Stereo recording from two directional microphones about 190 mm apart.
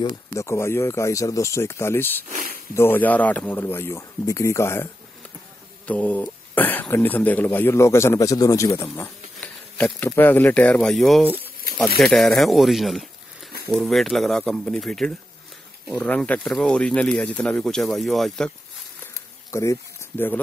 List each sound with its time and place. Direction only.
0.3 s a man's voice: 15° left (ahead or behind)
2.2 s speech: 50° right (ahead or behind)
2.7 s a man's voice: 10° left (ahead or behind)
5.9 s a man's voice: 10° left (ahead or behind)
11.2 s speech: 10° right (ahead or behind)
12.0 s speech: 5° left (ahead or behind)
19.5 s speech: 15° left (ahead or behind)